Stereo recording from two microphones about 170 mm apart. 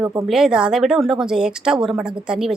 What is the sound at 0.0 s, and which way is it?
Speech, 15° right (ahead or behind).